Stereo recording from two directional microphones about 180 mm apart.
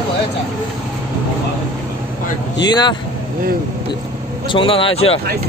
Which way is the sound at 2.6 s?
25° left (ahead or behind).